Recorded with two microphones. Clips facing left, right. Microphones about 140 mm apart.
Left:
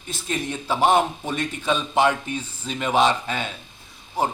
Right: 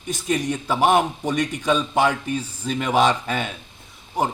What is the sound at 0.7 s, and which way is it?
Speech, 50° right (ahead or behind).